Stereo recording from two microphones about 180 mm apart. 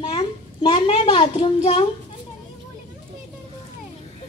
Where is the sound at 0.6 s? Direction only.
30° left (ahead or behind).